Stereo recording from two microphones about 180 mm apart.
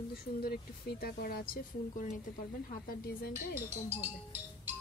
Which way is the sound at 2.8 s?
55° left (ahead or behind).